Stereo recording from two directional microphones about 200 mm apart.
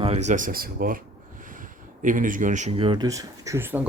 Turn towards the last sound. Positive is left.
turn(degrees=-10)  # may be behind; listen again after turning